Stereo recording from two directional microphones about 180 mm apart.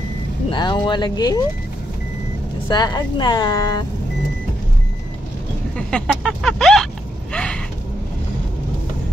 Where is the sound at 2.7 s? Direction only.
20° left (ahead or behind).